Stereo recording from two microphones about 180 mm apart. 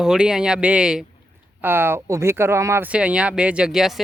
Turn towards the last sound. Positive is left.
turn(degrees=0)  # may be behind; listen again after turning